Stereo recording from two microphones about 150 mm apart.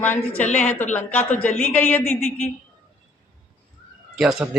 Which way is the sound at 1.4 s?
10° left (ahead or behind).